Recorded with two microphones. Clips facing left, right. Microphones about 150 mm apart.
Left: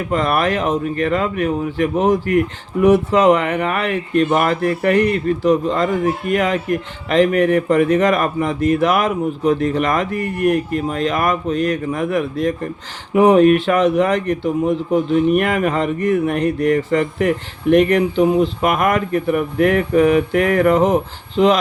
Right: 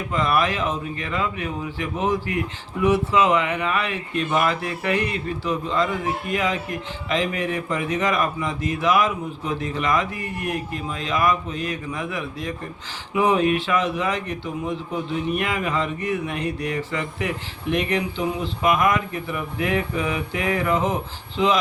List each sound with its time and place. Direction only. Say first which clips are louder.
0.1 s speech: left 4 dB; 55° left (ahead or behind)